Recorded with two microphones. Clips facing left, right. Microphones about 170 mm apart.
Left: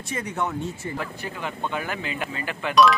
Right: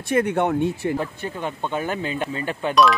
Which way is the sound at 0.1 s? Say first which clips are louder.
Right 9 dB; 60° right (ahead or behind).